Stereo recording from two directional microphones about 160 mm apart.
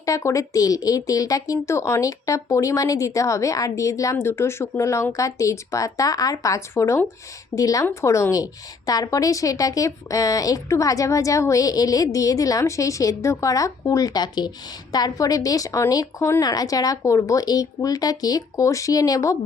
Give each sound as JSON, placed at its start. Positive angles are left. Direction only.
{"t": 0.0, "sound": "speech", "side_deg": 20}